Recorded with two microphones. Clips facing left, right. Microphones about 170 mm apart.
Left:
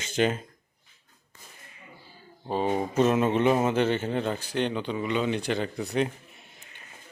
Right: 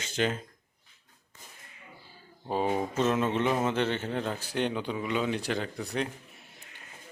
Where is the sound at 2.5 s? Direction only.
5° right (ahead or behind).